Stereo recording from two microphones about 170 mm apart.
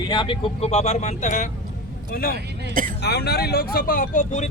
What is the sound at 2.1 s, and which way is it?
Speech, 65° left (ahead or behind).